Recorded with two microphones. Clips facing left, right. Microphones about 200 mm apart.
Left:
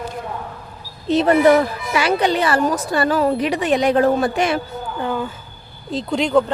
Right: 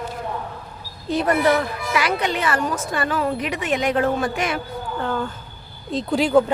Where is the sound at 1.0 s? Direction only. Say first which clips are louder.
Left 5 dB; 25° left (ahead or behind).